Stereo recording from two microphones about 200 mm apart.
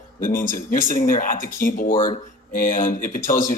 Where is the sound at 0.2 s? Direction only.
45° left (ahead or behind).